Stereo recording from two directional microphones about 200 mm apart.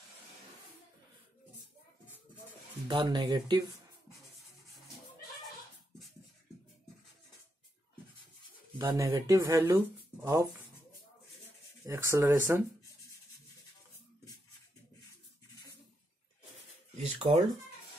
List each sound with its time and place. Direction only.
2.9 s speech: 25° right (ahead or behind)
8.7 s speech: 15° right (ahead or behind)
11.8 s speech: 15° right (ahead or behind)
16.9 s a sound: 30° right (ahead or behind)